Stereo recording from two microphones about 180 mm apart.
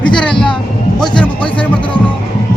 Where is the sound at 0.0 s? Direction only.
5° left (ahead or behind).